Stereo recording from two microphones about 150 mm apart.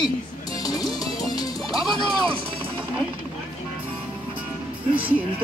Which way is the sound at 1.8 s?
Centre (ahead or behind).